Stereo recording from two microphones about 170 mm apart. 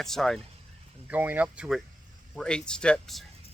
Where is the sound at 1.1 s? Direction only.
10° right (ahead or behind).